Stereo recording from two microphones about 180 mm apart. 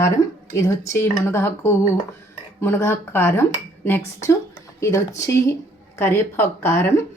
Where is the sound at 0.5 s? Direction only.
15° left (ahead or behind).